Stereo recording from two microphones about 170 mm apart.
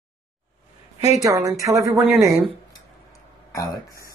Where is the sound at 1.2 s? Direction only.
20° right (ahead or behind).